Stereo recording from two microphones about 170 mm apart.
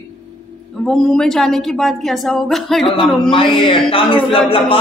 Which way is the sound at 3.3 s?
30° left (ahead or behind).